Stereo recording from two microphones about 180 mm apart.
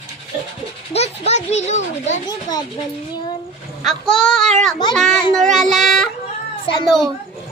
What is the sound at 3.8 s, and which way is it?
A child's voice, 5° left (ahead or behind).